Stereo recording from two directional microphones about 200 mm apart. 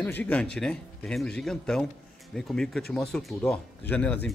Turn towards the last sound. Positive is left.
turn(degrees=5)  # may be behind; listen again after turning